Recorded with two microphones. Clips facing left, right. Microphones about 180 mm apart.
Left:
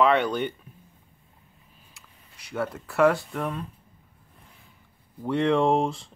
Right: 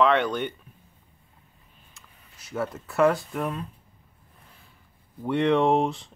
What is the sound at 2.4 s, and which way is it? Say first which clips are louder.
Speech: even; centre (ahead or behind).